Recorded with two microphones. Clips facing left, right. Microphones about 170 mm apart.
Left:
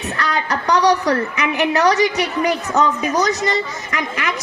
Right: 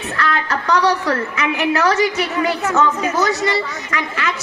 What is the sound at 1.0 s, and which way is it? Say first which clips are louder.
Speech: left 1 dB; 40° left (ahead or behind).